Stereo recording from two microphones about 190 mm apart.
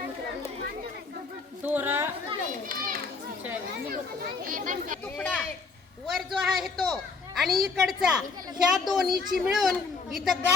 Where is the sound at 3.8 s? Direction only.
50° right (ahead or behind).